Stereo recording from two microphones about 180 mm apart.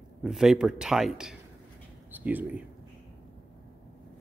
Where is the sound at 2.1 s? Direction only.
10° right (ahead or behind).